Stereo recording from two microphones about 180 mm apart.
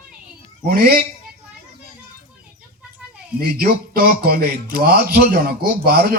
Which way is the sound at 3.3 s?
55° right (ahead or behind).